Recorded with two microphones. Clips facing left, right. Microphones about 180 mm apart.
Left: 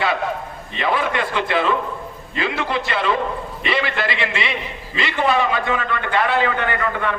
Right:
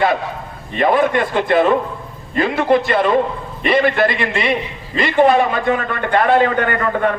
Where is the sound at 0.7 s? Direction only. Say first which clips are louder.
Right 7 dB; 50° right (ahead or behind).